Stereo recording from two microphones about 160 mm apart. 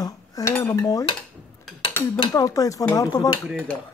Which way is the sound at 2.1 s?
20° left (ahead or behind).